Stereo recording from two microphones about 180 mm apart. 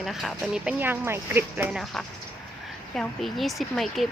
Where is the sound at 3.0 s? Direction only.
Centre (ahead or behind).